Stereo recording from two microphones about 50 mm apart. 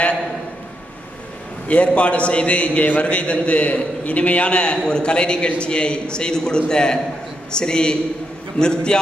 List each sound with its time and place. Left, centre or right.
1.7 s a man's voice: left